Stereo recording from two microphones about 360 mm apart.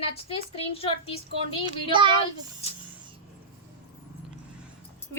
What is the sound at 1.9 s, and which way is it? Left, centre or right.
Speech, centre.